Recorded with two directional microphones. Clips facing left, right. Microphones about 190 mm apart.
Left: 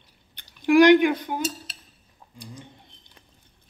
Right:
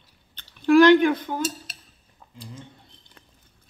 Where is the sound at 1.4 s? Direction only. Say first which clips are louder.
Right 1 dB; 50° right (ahead or behind).